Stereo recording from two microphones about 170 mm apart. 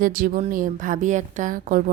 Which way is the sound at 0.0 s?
55° right (ahead or behind).